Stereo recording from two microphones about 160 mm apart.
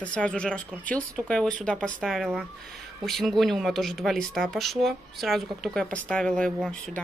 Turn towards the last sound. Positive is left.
turn(degrees=5)  # may be behind; listen again after turning